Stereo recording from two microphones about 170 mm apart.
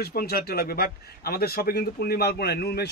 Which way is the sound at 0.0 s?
65° left (ahead or behind).